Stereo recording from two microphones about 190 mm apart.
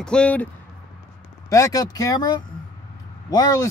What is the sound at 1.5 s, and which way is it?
Speech, 20° left (ahead or behind).